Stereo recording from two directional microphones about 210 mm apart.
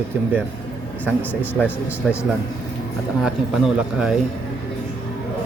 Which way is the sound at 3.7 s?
5° right (ahead or behind).